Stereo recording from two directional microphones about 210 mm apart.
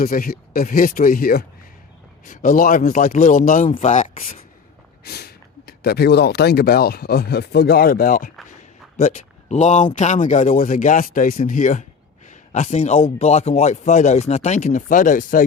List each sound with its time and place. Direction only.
0.0 s speech: 45° left (ahead or behind)
5.0 s speech: 50° left (ahead or behind)